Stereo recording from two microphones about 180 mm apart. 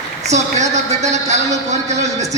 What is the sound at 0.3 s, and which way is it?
A man's voice, 40° right (ahead or behind).